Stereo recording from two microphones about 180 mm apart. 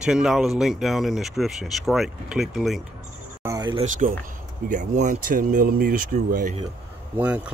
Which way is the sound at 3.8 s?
45° right (ahead or behind).